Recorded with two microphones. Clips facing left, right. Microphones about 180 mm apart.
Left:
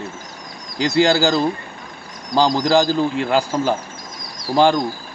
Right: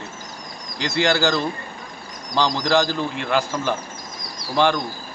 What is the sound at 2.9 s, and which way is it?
Speech, 40° left (ahead or behind).